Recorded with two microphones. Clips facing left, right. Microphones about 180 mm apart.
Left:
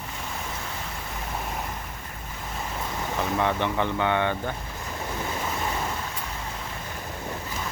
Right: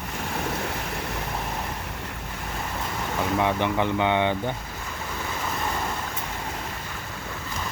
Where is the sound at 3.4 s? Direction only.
15° right (ahead or behind).